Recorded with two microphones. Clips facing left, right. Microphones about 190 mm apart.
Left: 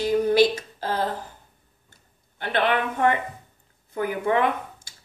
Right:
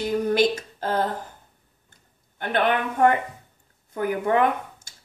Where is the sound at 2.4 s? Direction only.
45° right (ahead or behind).